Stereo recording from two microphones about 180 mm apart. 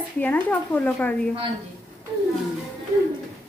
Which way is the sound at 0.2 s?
10° left (ahead or behind).